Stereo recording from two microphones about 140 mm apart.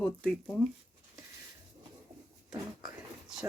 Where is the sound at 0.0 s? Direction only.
5° left (ahead or behind).